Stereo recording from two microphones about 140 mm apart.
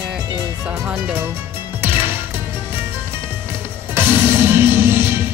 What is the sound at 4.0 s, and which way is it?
Music, 15° right (ahead or behind).